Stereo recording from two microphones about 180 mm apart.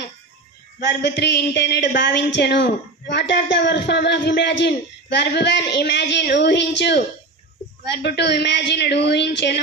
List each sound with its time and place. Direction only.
0.8 s a woman's voice: 70° left (ahead or behind)
8.0 s a woman's voice: 70° left (ahead or behind)